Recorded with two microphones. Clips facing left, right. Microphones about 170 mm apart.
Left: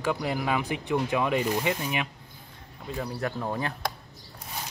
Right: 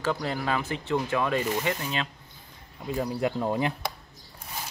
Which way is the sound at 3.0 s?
15° right (ahead or behind).